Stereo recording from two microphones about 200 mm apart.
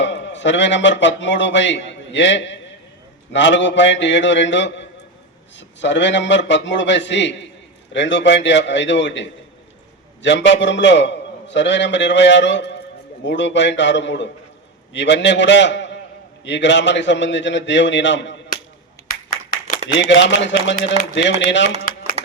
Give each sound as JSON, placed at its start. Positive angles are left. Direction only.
{"t": 0.0, "sound": "a man's voice", "side_deg": 65}
{"t": 19.5, "sound": "a sound", "side_deg": 45}
{"t": 20.0, "sound": "a man's voice", "side_deg": 65}